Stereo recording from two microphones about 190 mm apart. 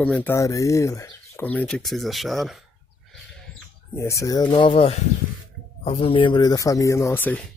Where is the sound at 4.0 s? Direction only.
15° left (ahead or behind).